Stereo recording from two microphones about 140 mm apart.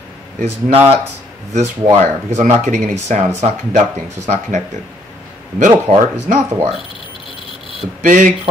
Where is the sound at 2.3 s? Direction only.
60° right (ahead or behind).